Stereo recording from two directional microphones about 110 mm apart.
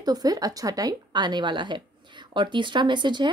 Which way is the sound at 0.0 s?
35° right (ahead or behind).